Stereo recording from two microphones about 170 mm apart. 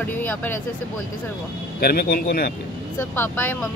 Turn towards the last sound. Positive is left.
turn(degrees=10)  # may be behind; listen again after turning